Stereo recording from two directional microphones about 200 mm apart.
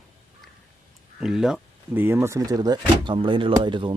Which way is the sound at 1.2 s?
Centre (ahead or behind).